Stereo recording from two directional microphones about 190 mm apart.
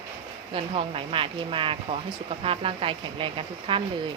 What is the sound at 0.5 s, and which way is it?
Speech, 30° right (ahead or behind).